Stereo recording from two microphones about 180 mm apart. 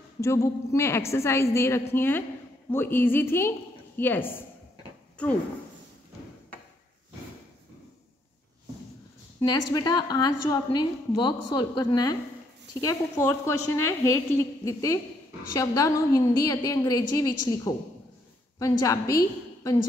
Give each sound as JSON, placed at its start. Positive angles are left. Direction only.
{"t": 0.2, "sound": "a woman's voice", "side_deg": 15}
{"t": 9.4, "sound": "a woman's voice", "side_deg": 20}